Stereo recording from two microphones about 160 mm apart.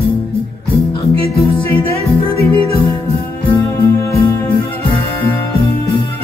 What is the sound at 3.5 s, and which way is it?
Music, 20° left (ahead or behind).